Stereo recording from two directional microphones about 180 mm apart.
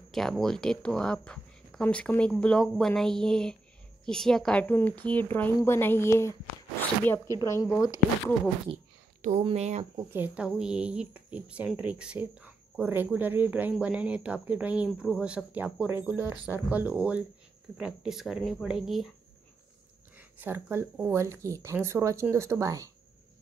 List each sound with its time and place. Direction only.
0.1 s a woman's voice: centre (ahead or behind)
7.3 s a woman's voice: 15° left (ahead or behind)
9.2 s speech: 35° right (ahead or behind)
10.1 s speech: 10° right (ahead or behind)
20.2 s speech: 10° right (ahead or behind)